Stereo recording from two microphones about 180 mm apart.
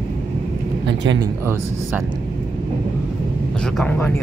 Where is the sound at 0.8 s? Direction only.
90° right.